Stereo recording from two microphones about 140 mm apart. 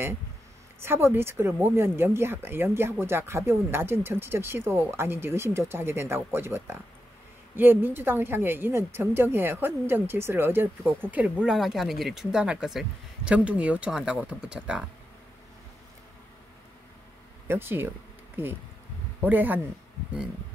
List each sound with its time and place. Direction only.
0.7 s a woman's voice: 15° right (ahead or behind)
17.5 s a woman's voice: 15° right (ahead or behind)